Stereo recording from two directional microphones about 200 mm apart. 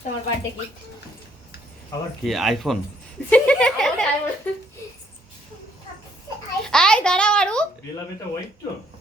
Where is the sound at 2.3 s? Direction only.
Centre (ahead or behind).